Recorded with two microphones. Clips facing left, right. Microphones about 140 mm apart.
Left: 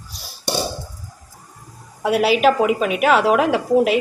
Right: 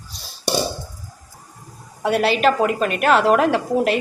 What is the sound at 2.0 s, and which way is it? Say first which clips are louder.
A woman's voice: left 2 dB; 5° left (ahead or behind).